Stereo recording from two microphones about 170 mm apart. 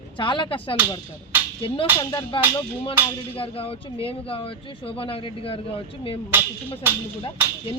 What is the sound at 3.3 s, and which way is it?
A woman's voice, 30° left (ahead or behind).